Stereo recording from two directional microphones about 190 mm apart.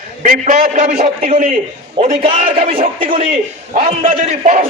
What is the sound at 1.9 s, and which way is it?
A man's voice, 30° right (ahead or behind).